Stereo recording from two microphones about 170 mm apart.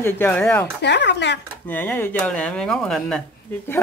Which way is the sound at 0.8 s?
90° left.